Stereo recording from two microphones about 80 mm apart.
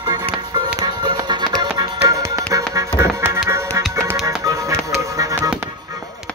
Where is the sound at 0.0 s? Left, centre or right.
Right.